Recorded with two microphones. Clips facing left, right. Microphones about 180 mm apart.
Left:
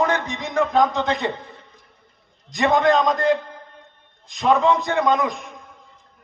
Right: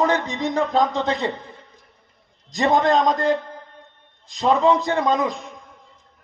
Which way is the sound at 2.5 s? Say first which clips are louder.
Left 1 dB; 35° right (ahead or behind).